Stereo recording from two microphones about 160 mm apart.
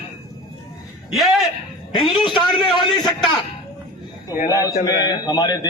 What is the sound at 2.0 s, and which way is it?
Speech, 30° left (ahead or behind).